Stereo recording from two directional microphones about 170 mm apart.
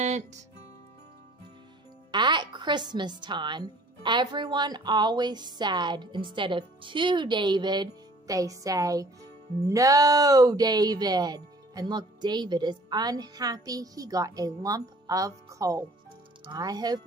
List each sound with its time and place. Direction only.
0.0 s music: 45° right (ahead or behind)
2.0 s speech: 25° right (ahead or behind)